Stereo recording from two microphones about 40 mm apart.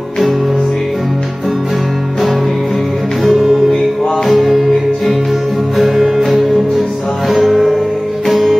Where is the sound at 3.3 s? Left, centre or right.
Centre.